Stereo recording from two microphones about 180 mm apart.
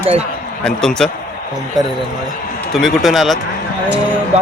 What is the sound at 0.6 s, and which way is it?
Speech, 5° left (ahead or behind).